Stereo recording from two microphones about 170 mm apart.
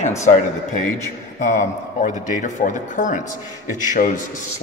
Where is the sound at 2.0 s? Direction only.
50° left (ahead or behind).